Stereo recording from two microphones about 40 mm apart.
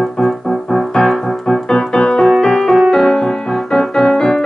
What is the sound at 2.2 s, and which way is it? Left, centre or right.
Music, centre.